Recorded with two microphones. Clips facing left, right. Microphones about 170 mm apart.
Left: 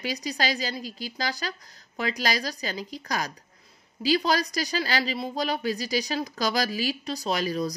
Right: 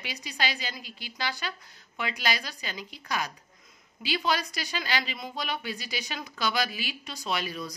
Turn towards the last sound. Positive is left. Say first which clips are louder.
# left 6 dB
turn(degrees=40)  # may be behind; listen again after turning